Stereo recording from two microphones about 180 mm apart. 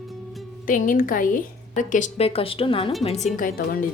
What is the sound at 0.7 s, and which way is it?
A woman's voice, 50° left (ahead or behind).